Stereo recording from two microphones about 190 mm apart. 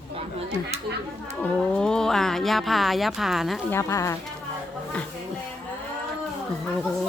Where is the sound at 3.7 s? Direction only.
15° left (ahead or behind).